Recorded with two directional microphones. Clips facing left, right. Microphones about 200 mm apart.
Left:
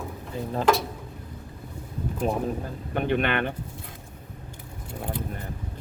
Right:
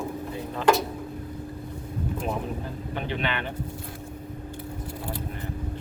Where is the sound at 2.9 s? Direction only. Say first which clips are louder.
Left 6 dB; 55° left (ahead or behind).